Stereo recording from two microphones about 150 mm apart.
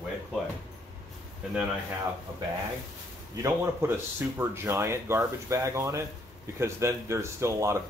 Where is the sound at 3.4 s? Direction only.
15° right (ahead or behind).